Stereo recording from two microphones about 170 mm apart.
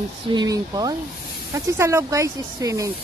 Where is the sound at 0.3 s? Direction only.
25° right (ahead or behind).